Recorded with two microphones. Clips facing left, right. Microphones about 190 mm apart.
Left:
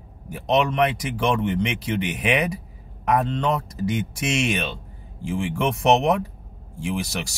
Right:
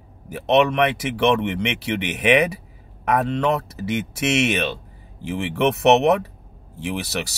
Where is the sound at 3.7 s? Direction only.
70° right (ahead or behind).